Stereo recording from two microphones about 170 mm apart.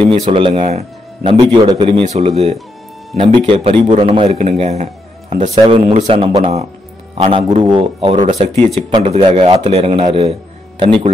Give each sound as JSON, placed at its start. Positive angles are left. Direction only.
{"t": 0.1, "sound": "a man's voice", "side_deg": -30}
{"t": 8.3, "sound": "a man's voice", "side_deg": -45}